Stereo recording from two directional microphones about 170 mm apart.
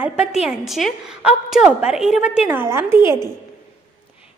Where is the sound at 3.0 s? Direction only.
25° left (ahead or behind).